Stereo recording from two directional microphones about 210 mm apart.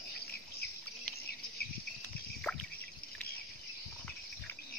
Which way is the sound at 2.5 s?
Centre (ahead or behind).